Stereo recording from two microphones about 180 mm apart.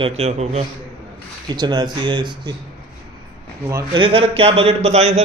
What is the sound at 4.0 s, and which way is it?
A man's voice, 30° right (ahead or behind).